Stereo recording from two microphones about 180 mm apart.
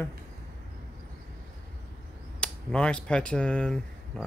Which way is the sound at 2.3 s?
5° left (ahead or behind).